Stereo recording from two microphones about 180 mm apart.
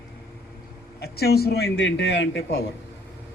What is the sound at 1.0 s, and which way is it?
Speech, 60° left (ahead or behind).